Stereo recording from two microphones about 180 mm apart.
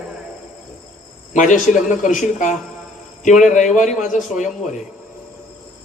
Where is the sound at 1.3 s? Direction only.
45° left (ahead or behind).